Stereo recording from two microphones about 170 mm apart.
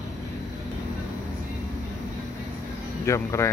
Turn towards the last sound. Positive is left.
turn(degrees=15)  # may be behind; listen again after turning